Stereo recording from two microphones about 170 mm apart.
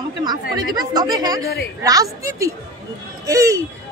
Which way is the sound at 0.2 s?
25° right (ahead or behind).